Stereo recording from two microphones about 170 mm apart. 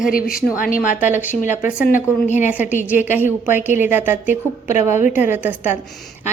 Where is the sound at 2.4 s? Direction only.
10° right (ahead or behind).